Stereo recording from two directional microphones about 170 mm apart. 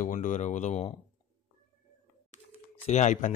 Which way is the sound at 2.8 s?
45° left (ahead or behind).